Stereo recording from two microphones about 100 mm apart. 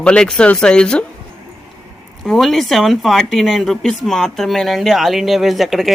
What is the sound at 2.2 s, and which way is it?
Speech, 5° left (ahead or behind).